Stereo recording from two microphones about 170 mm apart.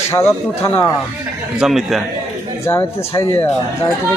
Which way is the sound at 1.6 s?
Centre (ahead or behind).